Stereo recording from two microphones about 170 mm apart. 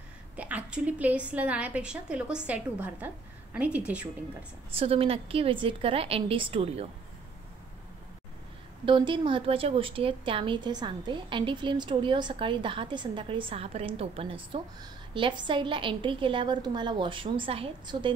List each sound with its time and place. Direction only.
0.4 s a woman's voice: 10° right (ahead or behind)
4.7 s a woman's voice: 35° right (ahead or behind)
8.8 s a woman's voice: 30° right (ahead or behind)